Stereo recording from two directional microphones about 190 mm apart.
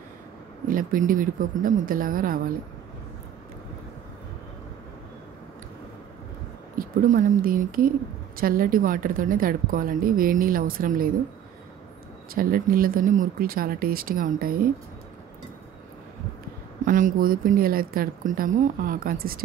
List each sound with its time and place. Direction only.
0.7 s a woman's voice: 45° right (ahead or behind)
6.8 s a woman's voice: 45° right (ahead or behind)
12.4 s a woman's voice: 50° right (ahead or behind)
16.8 s a woman's voice: 45° right (ahead or behind)